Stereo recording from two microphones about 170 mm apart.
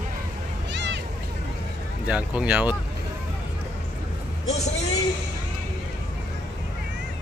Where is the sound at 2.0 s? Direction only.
10° right (ahead or behind).